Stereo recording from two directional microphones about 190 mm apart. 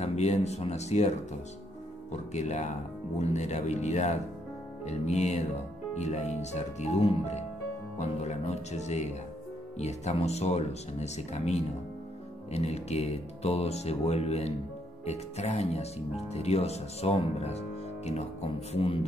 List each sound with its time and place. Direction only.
0.0 s speech: 35° left (ahead or behind)
2.3 s a man's voice: 35° left (ahead or behind)